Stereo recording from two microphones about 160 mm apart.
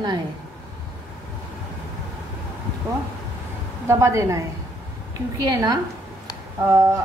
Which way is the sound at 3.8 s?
20° right (ahead or behind).